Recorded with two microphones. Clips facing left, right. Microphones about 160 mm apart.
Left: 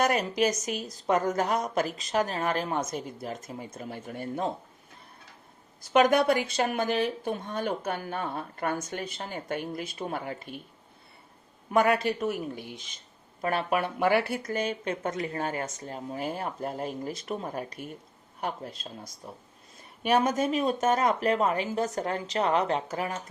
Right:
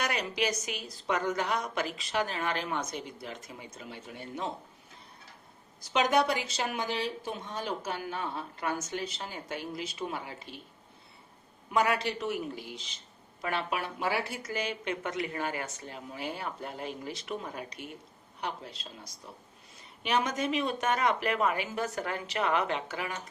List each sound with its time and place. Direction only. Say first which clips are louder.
0.0 s speech: left 6 dB; 45° left (ahead or behind)
5.8 s speech: left 5 dB; 55° left (ahead or behind)
11.7 s speech: left 4 dB; 50° left (ahead or behind)